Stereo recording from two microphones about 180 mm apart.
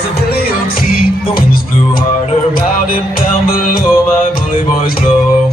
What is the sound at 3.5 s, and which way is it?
Music, 50° left (ahead or behind).